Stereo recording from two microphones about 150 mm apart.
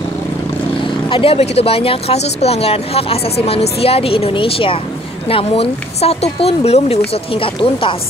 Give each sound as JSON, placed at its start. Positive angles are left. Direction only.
{"t": 1.1, "sound": "speech", "side_deg": 40}